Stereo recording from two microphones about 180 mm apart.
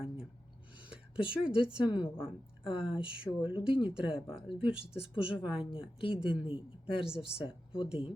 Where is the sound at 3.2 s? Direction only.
30° left (ahead or behind).